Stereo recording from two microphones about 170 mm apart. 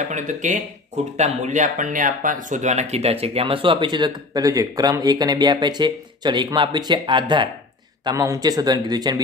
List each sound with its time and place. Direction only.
0.1 s speech: 45° right (ahead or behind); by 9.2 s 25° right (ahead or behind)